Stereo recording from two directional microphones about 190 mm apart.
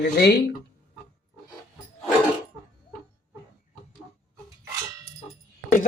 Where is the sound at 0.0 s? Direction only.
55° left (ahead or behind).